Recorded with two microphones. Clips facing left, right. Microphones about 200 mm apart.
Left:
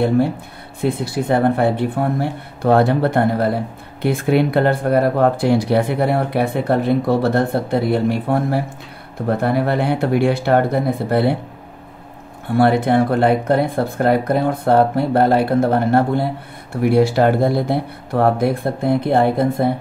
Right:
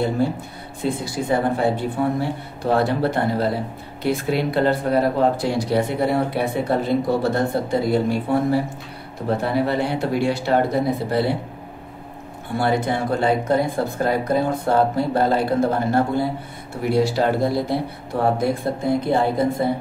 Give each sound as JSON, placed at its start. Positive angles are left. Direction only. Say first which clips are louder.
{"t": 0.7, "sound": "speech", "louder": "left 4 dB", "side_deg": 60}
{"t": 12.5, "sound": "speech", "louder": "left 7 dB", "side_deg": 60}